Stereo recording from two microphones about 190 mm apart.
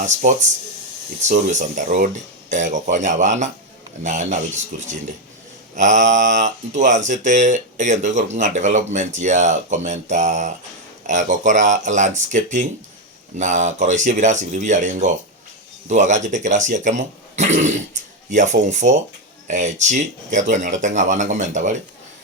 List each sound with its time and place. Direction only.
0.0 s speech: 40° right (ahead or behind)
5.7 s speech: 40° right (ahead or behind)